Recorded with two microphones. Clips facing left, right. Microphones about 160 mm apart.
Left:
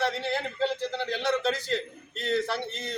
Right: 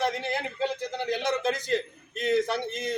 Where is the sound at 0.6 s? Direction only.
15° right (ahead or behind).